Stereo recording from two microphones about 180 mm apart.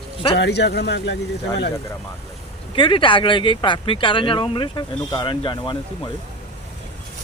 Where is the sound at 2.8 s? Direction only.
25° left (ahead or behind).